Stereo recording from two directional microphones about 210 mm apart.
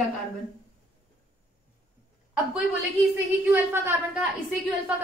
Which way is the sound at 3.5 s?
10° right (ahead or behind).